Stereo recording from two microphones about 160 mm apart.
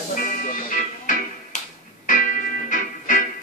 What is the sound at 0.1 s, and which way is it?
Music, 60° left (ahead or behind).